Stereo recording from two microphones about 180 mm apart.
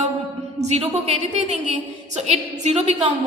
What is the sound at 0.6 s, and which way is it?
A woman's voice, 35° right (ahead or behind).